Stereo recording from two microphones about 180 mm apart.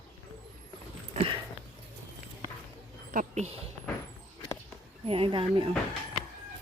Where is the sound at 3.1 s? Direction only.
35° right (ahead or behind).